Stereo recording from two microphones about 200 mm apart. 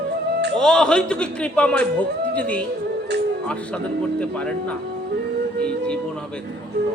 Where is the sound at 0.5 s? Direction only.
5° left (ahead or behind).